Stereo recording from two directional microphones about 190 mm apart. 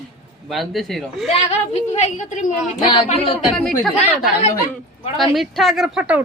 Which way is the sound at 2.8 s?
25° left (ahead or behind).